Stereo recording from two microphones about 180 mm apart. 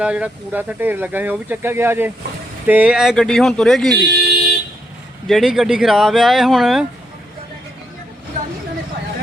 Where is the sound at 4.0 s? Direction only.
65° right (ahead or behind).